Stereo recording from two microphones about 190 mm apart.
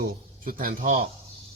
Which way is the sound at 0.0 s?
55° right (ahead or behind).